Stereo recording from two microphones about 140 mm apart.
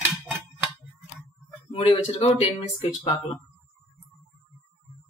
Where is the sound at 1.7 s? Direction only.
45° left (ahead or behind).